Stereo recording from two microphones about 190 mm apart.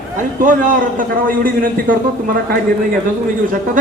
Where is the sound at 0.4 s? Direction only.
45° right (ahead or behind).